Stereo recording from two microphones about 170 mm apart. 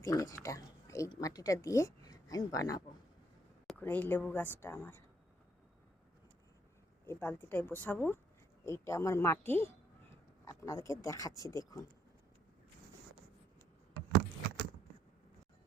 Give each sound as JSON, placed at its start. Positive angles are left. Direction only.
{"t": 0.0, "sound": "speech", "side_deg": 20}
{"t": 3.7, "sound": "a woman's voice", "side_deg": 10}
{"t": 7.0, "sound": "speech", "side_deg": 15}